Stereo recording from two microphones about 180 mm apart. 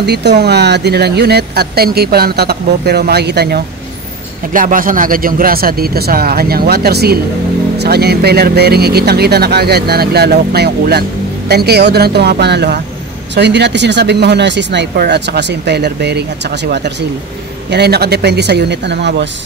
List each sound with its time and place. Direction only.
0.0 s speech: 70° right (ahead or behind)
4.5 s speech: 50° right (ahead or behind); by 19.2 s 70° right (ahead or behind)